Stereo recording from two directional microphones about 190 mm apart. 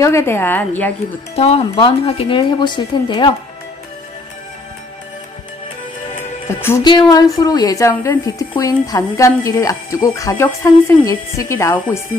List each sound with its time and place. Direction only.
0.0 s a woman's voice: 15° left (ahead or behind)
1.3 s speech: 30° left (ahead or behind)
6.8 s a woman's voice: 20° left (ahead or behind)